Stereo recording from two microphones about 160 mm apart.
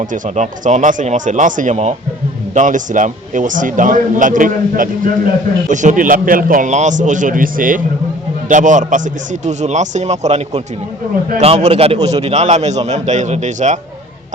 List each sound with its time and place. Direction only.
0.0 s a man's voice: 50° right (ahead or behind)